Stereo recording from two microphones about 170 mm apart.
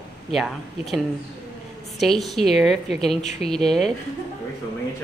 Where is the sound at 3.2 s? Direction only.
40° left (ahead or behind).